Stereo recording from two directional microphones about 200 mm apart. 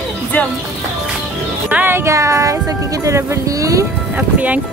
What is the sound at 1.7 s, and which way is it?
Speech, 10° right (ahead or behind).